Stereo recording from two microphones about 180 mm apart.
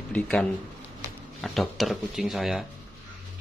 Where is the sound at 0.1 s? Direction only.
5° left (ahead or behind).